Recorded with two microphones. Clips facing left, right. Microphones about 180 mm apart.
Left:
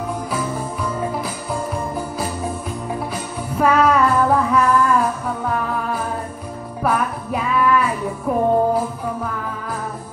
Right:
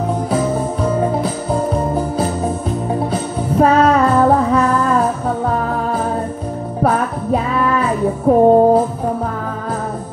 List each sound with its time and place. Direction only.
1.7 s music: 25° right (ahead or behind)
6.8 s music: 30° right (ahead or behind)